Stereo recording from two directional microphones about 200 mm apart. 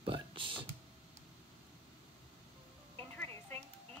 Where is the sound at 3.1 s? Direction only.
10° left (ahead or behind).